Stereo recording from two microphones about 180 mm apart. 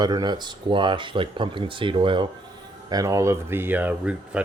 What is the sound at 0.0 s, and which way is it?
Speech, 25° right (ahead or behind).